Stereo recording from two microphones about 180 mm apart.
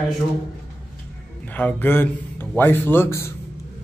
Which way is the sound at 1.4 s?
10° left (ahead or behind).